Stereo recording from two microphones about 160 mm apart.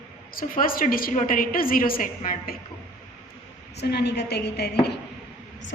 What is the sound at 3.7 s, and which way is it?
Speech, 90° left.